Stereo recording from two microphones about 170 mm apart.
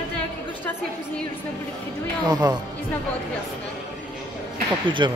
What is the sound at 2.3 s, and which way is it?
Speech, 25° right (ahead or behind).